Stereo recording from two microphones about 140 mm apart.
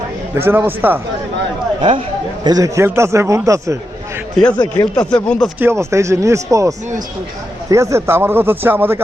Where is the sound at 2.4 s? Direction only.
25° right (ahead or behind).